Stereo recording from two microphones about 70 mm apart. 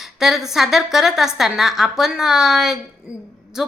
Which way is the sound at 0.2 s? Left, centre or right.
Centre.